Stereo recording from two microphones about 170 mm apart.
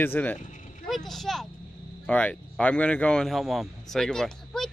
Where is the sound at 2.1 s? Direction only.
5° left (ahead or behind).